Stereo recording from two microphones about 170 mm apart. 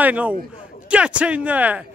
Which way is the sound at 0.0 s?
10° right (ahead or behind).